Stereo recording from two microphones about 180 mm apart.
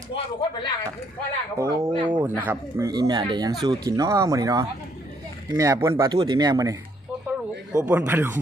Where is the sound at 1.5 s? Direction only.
15° right (ahead or behind).